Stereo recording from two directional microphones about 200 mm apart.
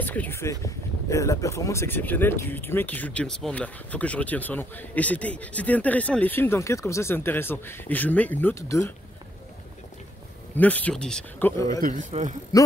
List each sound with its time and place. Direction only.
0.0 s speech: 10° left (ahead or behind)
10.5 s speech: 10° left (ahead or behind)
11.8 s a man's voice: 40° right (ahead or behind)